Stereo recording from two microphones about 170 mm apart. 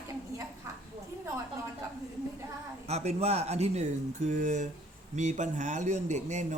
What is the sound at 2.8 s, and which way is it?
Speech, 40° right (ahead or behind).